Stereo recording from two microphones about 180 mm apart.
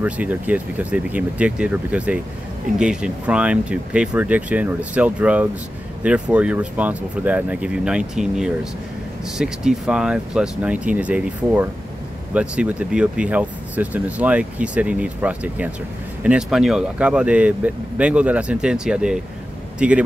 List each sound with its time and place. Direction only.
0.0 s speech: 10° right (ahead or behind)